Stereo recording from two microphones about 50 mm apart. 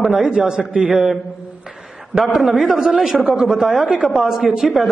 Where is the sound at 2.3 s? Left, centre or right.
Centre.